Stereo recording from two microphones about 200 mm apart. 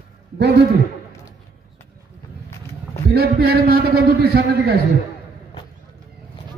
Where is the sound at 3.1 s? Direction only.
50° right (ahead or behind).